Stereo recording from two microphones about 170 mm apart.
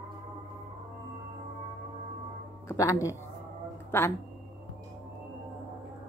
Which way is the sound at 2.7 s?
20° left (ahead or behind).